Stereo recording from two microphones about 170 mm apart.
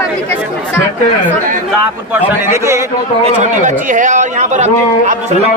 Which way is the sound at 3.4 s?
50° right (ahead or behind).